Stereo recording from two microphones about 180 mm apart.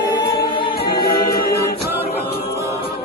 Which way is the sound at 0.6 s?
60° left (ahead or behind).